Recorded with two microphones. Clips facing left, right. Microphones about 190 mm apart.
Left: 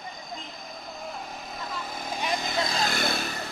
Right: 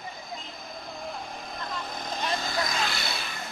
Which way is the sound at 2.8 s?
45° left (ahead or behind).